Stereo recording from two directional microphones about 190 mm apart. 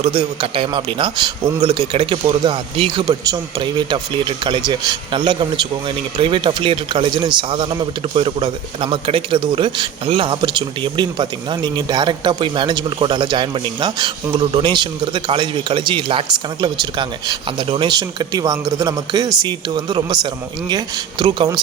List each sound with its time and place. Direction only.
0.0 s speech: 25° right (ahead or behind)